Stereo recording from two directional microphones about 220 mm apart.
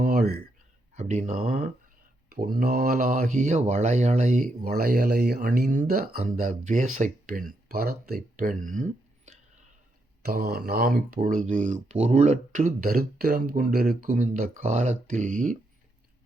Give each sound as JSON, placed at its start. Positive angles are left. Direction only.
{"t": 0.0, "sound": "a sound", "side_deg": -40}
{"t": 0.9, "sound": "speech", "side_deg": -30}
{"t": 2.3, "sound": "speech", "side_deg": -40}
{"t": 10.2, "sound": "speech", "side_deg": -45}